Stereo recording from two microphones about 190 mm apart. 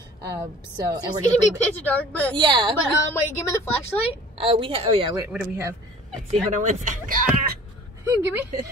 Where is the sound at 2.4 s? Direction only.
25° right (ahead or behind).